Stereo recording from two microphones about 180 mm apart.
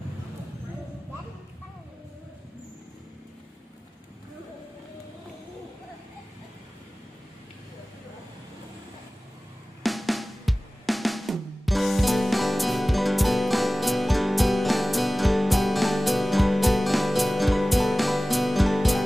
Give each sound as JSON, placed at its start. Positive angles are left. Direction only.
{"t": 9.8, "sound": "drum", "side_deg": 0}